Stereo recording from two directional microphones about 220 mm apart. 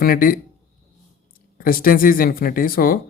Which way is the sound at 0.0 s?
40° left (ahead or behind).